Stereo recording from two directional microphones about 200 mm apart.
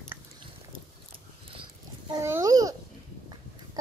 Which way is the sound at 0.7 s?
25° right (ahead or behind).